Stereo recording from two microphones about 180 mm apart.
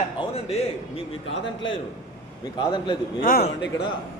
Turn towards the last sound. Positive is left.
turn(degrees=65)  # may be behind; listen again after turning